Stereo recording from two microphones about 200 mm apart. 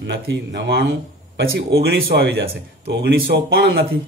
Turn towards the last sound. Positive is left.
turn(degrees=-55)  # may be behind; listen again after turning